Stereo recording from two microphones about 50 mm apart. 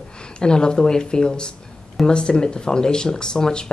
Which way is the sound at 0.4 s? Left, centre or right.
Centre.